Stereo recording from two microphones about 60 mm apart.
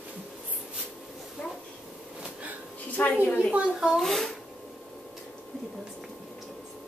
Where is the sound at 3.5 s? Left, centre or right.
Centre.